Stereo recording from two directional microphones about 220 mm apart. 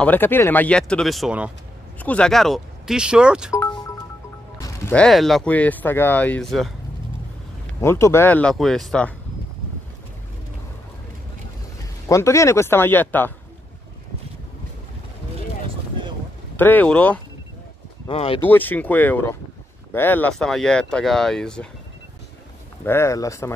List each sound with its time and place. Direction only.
0.0 s speech: 10° left (ahead or behind)
3.5 s music: 10° left (ahead or behind)
4.6 s speech: 10° left (ahead or behind)
7.8 s speech: 10° left (ahead or behind)
12.1 s speech: 15° left (ahead or behind)
16.5 s speech: 10° left (ahead or behind)
18.0 s speech: 25° left (ahead or behind)
18.4 s speech: 10° left (ahead or behind)
22.8 s speech: 10° left (ahead or behind)